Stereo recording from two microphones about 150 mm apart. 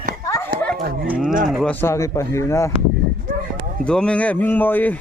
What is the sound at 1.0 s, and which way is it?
Speech, 10° right (ahead or behind).